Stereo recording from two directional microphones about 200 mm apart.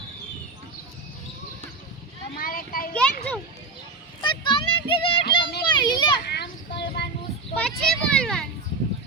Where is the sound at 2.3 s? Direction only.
45° left (ahead or behind).